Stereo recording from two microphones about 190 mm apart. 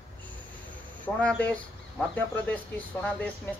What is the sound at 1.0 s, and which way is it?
Speech, 5° left (ahead or behind).